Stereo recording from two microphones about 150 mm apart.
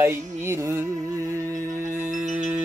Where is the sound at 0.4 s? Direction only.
20° right (ahead or behind).